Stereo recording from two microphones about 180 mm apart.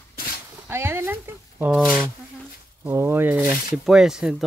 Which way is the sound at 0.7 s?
15° right (ahead or behind).